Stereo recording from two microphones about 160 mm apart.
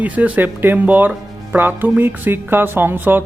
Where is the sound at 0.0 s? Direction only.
10° right (ahead or behind).